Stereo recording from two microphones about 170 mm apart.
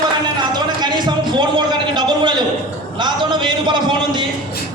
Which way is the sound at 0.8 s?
25° right (ahead or behind).